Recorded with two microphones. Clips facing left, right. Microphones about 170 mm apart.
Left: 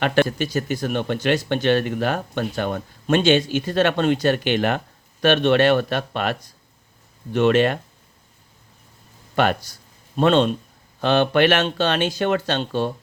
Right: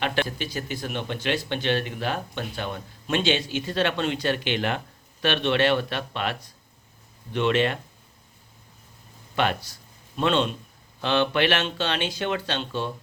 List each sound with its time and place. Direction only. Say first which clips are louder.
0.0 s speech: left 7 dB; 50° left (ahead or behind)
7.3 s speech: left 6 dB; 45° left (ahead or behind)
9.3 s speech: left 5 dB; 50° left (ahead or behind)